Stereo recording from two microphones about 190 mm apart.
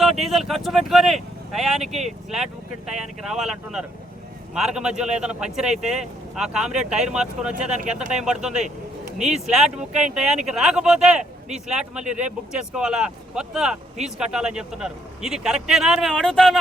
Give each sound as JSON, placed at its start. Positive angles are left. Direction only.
{"t": 0.0, "sound": "speech", "side_deg": 0}
{"t": 1.8, "sound": "speech", "side_deg": -35}
{"t": 2.0, "sound": "speech", "side_deg": 0}